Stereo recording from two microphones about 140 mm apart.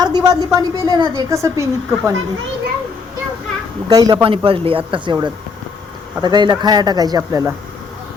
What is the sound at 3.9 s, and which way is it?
Speech, 25° right (ahead or behind).